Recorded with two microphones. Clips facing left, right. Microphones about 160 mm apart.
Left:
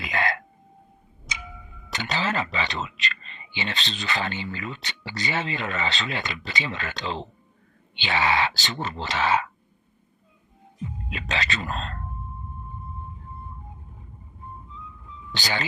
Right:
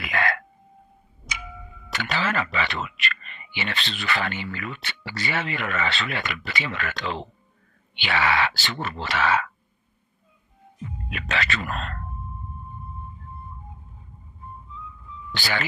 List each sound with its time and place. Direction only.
0.0 s throat clearing: 20° left (ahead or behind)
1.3 s tick-tock: centre (ahead or behind)
1.9 s speech: 20° left (ahead or behind)
11.1 s speech: 20° left (ahead or behind)
15.4 s speech: 20° left (ahead or behind)